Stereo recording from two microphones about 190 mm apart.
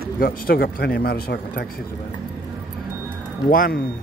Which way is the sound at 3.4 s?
45° left (ahead or behind).